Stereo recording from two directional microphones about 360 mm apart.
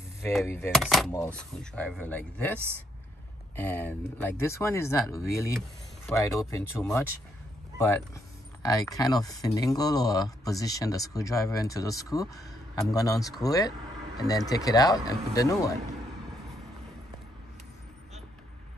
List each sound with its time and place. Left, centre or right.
0.2 s speech: centre
8.6 s speech: centre